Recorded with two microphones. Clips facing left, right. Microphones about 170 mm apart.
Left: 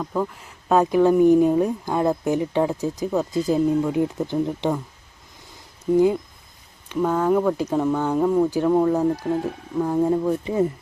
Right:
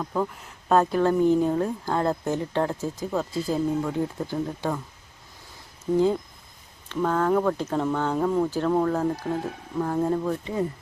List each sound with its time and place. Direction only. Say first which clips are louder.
0.0 s speech: left 2 dB; centre (ahead or behind)
0.8 s speech: left 6 dB; 15° left (ahead or behind)
6.8 s speech: left 3 dB; 10° left (ahead or behind)